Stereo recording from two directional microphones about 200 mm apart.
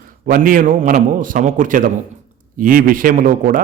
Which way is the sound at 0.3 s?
45° right (ahead or behind).